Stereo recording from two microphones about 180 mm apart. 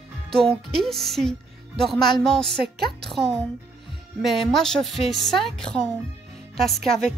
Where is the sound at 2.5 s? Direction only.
65° right (ahead or behind).